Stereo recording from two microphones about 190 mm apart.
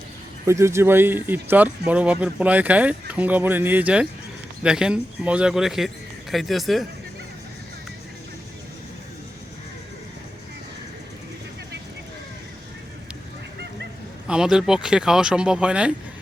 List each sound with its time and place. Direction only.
0.4 s speech: 15° right (ahead or behind)
14.3 s speech: 5° right (ahead or behind)